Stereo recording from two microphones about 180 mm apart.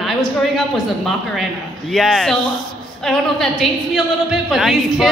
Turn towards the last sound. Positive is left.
turn(degrees=0)  # may be behind; listen again after turning